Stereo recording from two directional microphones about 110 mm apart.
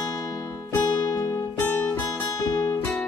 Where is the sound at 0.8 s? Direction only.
40° left (ahead or behind).